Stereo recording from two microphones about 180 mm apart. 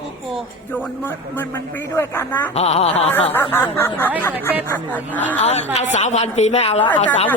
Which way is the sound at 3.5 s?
10° left (ahead or behind).